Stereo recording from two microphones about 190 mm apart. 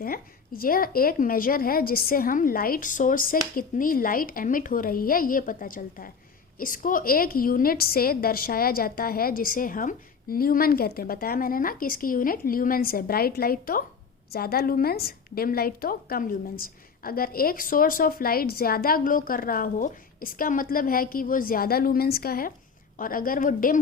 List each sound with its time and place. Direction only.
0.0 s a woman's voice: 50° left (ahead or behind)